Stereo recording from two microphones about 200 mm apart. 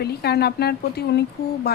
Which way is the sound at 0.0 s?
55° left (ahead or behind).